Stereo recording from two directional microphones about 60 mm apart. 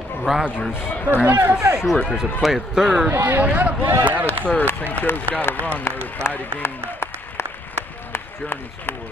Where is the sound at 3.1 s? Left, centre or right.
Right.